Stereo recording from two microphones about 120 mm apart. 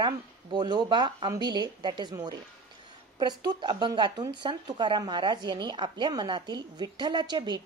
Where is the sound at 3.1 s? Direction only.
35° right (ahead or behind).